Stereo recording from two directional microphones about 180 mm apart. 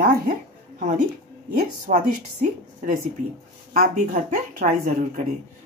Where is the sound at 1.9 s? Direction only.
45° right (ahead or behind).